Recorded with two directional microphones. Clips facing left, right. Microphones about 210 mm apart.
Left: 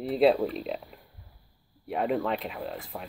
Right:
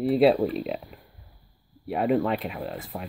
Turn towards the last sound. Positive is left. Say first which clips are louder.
# right 3 dB
turn(degrees=0)  # may be behind; listen again after turning